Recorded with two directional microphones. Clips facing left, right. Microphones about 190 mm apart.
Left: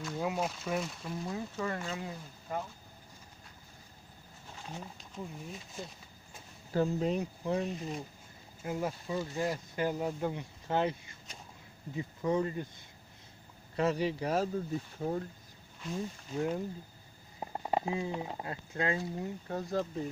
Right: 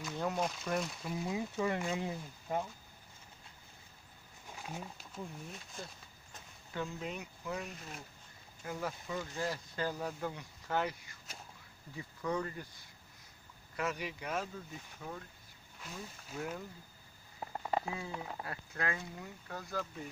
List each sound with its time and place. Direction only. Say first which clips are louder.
0.0 s speech: left 2 dB; 5° left (ahead or behind); by 2.6 s 15° right (ahead or behind)
4.5 s speech: even; 10° right (ahead or behind)
6.7 s speech: left 10 dB; 40° left (ahead or behind)
16.3 s speech: left 8 dB; 30° left (ahead or behind)